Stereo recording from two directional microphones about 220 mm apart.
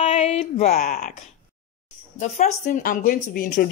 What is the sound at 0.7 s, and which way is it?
Speech, 40° left (ahead or behind).